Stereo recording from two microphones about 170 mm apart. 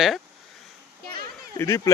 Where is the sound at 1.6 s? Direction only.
20° left (ahead or behind).